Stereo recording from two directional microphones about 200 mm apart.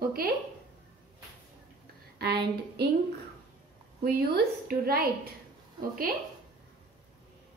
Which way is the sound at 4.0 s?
50° right (ahead or behind).